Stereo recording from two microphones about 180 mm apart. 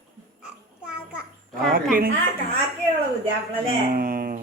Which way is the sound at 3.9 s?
55° right (ahead or behind).